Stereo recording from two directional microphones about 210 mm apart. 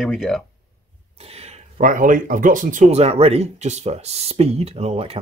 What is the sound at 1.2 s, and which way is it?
Speech, 30° right (ahead or behind).